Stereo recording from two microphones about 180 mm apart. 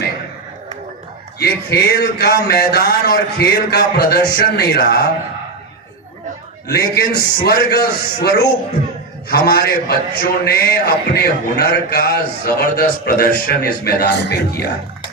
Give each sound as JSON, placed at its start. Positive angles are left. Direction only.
{"t": 1.4, "sound": "a man's voice", "side_deg": 60}
{"t": 6.7, "sound": "a man's voice", "side_deg": 60}